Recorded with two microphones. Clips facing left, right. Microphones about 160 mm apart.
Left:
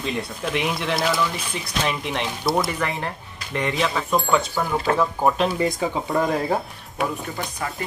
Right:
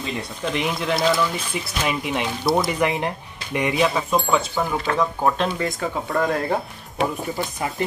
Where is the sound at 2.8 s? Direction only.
15° right (ahead or behind).